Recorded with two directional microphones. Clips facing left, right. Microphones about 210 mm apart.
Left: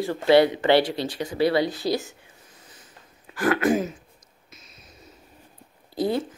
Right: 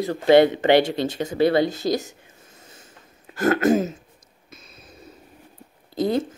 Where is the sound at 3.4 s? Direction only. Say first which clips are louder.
Right 3 dB; 45° right (ahead or behind).